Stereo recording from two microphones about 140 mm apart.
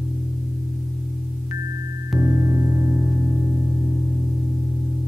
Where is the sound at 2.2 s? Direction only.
15° right (ahead or behind).